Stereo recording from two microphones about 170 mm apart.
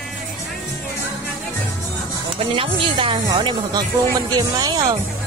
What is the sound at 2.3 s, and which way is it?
A woman's voice, 30° right (ahead or behind).